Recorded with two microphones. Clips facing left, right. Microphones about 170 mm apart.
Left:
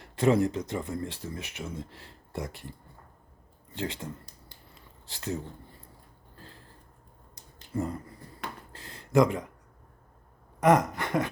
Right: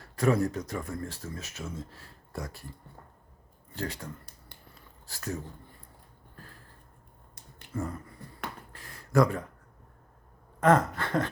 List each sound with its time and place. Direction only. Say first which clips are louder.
0.0 s speech: left 2 dB; 25° left (ahead or behind)
3.8 s speech: left 2 dB; 25° left (ahead or behind)
4.7 s a sound: left 1 dB; 20° left (ahead or behind)
7.8 s speech: left 3 dB; 20° left (ahead or behind)
8.7 s a sound: left 2 dB; 25° left (ahead or behind)
10.6 s speech: left 1 dB; 15° left (ahead or behind)